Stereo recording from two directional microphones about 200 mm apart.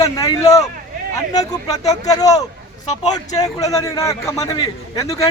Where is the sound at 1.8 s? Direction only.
15° left (ahead or behind).